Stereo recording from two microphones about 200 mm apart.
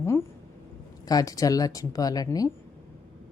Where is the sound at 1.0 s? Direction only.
20° left (ahead or behind).